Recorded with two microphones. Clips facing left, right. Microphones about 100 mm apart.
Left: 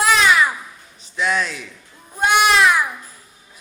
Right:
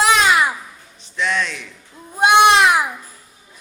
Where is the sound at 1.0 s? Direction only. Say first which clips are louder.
Left 1 dB; 5° left (ahead or behind).